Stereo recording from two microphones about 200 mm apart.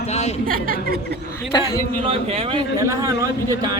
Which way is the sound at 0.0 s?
35° left (ahead or behind).